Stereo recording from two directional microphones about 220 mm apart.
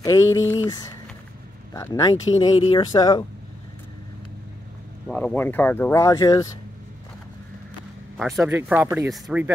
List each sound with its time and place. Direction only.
0.0 s speech: 15° left (ahead or behind)
5.0 s speech: 5° left (ahead or behind)
8.2 s speech: centre (ahead or behind)